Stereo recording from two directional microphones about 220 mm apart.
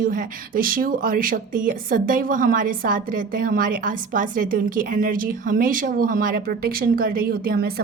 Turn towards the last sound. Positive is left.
turn(degrees=-45)  # may be behind; listen again after turning